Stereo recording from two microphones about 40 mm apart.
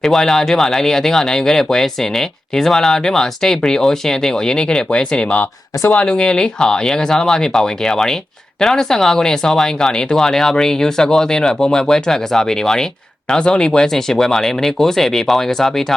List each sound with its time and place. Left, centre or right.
0.0 s speech: centre